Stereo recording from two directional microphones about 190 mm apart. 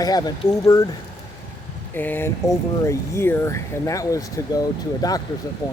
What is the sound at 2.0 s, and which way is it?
Speech, 10° left (ahead or behind).